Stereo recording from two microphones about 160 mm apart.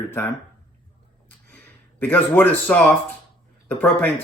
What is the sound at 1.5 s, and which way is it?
A man's voice, 10° left (ahead or behind).